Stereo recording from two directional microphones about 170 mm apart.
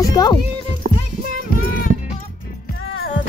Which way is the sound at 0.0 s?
20° left (ahead or behind).